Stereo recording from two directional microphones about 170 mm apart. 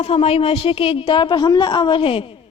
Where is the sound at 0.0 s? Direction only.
35° left (ahead or behind).